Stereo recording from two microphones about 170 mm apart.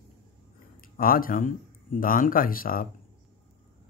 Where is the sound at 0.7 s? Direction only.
55° left (ahead or behind).